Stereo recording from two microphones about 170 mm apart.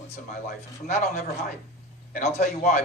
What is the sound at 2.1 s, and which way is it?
Speech, 45° left (ahead or behind).